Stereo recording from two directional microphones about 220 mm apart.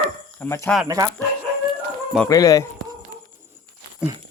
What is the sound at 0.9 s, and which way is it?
Speech, 15° right (ahead or behind).